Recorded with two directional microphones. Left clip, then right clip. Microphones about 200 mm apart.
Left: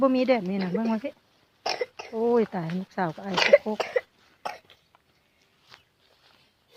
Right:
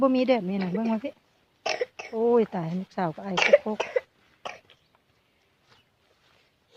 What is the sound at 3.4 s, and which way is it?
Speech, 20° left (ahead or behind).